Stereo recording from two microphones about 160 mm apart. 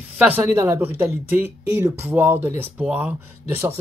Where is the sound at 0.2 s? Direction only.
10° right (ahead or behind).